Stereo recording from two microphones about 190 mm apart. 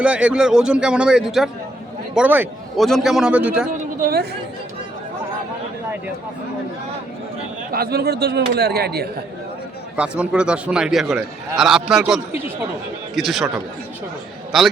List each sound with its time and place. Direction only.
0.0 s a man's voice: 5° right (ahead or behind)
4.0 s a man's voice: 55° right (ahead or behind)
7.7 s a man's voice: 55° right (ahead or behind)
9.9 s a man's voice: 5° right (ahead or behind)